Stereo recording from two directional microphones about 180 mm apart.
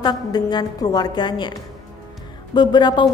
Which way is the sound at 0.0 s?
25° left (ahead or behind).